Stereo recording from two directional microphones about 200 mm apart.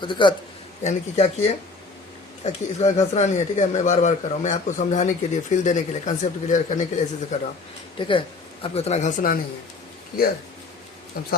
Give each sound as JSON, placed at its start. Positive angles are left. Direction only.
{"t": 0.0, "sound": "a man's voice", "side_deg": 25}
{"t": 0.8, "sound": "speech", "side_deg": 35}
{"t": 7.9, "sound": "a man's voice", "side_deg": 25}